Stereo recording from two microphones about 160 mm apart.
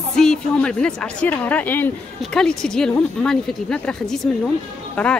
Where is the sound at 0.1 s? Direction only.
5° left (ahead or behind).